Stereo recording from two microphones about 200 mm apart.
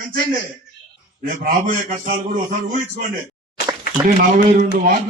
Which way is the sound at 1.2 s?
45° right (ahead or behind).